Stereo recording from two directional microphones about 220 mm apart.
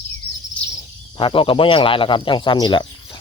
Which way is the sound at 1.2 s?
25° left (ahead or behind).